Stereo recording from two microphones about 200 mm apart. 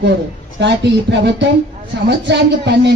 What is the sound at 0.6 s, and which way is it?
Speech, 60° right (ahead or behind).